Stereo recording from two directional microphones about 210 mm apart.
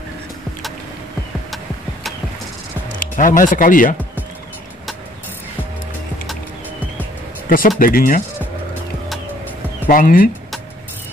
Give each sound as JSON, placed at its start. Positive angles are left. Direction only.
{"t": 3.0, "sound": "speech", "side_deg": 40}
{"t": 7.4, "sound": "speech", "side_deg": 40}
{"t": 9.8, "sound": "speech", "side_deg": 40}